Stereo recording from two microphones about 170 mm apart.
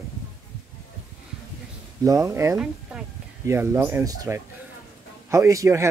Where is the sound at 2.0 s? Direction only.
20° right (ahead or behind).